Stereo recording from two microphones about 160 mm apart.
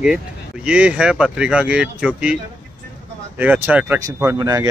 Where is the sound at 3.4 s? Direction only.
10° right (ahead or behind).